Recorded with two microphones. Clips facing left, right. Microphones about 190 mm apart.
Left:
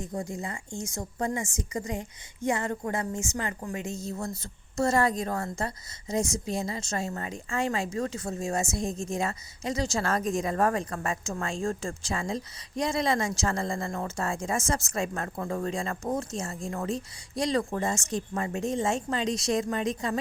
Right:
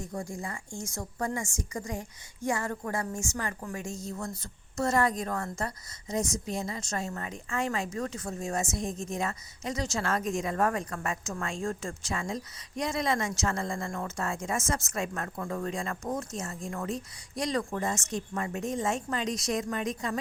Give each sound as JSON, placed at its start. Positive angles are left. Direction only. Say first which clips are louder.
{"t": 0.0, "sound": "a woman's voice", "louder": "left 3 dB", "side_deg": 20}